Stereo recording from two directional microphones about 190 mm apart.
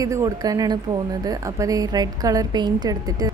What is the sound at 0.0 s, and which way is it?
Speech, 15° right (ahead or behind).